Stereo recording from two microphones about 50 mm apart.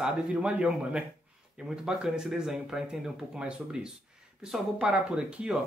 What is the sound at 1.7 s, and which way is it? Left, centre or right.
Speech, centre.